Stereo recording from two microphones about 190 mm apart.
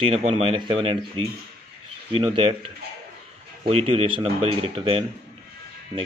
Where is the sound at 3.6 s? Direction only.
30° right (ahead or behind).